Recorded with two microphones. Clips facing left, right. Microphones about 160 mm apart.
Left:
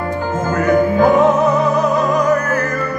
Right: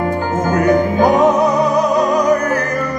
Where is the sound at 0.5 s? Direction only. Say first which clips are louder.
Even; 15° right (ahead or behind).